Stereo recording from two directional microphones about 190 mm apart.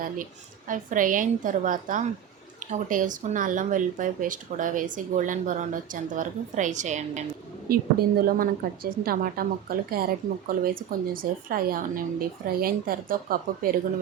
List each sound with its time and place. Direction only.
0.7 s speech: 45° right (ahead or behind)
7.7 s speech: 50° right (ahead or behind)